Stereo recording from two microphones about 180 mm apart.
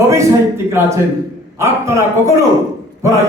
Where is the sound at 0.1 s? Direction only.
15° right (ahead or behind).